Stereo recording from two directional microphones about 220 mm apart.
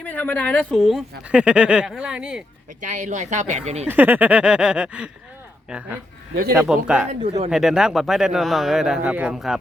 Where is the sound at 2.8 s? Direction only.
35° right (ahead or behind).